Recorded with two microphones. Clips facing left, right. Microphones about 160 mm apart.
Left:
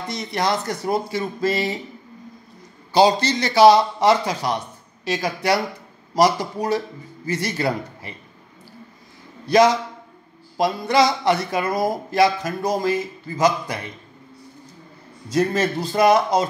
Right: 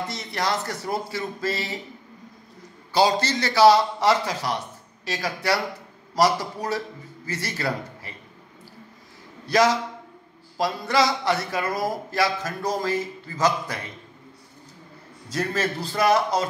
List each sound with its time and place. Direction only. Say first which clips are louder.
0.1 s speech: left 8 dB; 20° left (ahead or behind)
2.9 s a man's voice: left 4 dB; 20° left (ahead or behind)
9.5 s a man's voice: left 4 dB; 20° left (ahead or behind)
15.2 s a man's voice: left 6 dB; 20° left (ahead or behind)